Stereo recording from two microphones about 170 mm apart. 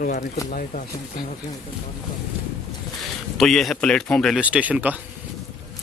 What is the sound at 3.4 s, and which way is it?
Speech, centre (ahead or behind).